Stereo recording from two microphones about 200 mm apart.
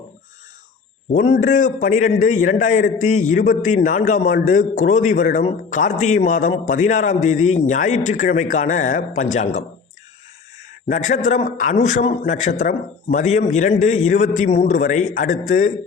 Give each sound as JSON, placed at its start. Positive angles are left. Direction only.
{"t": 1.1, "sound": "a man's voice", "side_deg": 35}
{"t": 10.8, "sound": "a man's voice", "side_deg": 35}